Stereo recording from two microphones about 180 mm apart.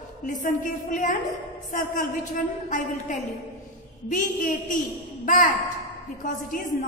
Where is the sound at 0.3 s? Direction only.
45° left (ahead or behind).